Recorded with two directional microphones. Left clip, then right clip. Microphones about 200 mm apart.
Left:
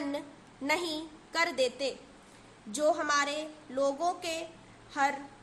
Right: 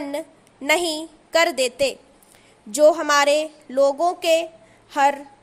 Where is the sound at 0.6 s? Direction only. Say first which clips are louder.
Right 11 dB; 40° right (ahead or behind).